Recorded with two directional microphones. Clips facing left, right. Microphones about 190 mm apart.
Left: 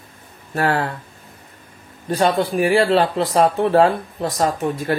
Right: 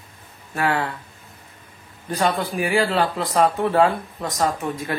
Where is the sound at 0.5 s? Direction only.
40° left (ahead or behind).